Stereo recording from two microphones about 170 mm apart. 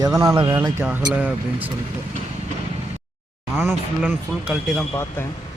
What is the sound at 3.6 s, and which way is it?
Speech, 10° right (ahead or behind).